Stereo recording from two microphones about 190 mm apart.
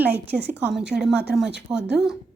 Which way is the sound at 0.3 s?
60° right (ahead or behind).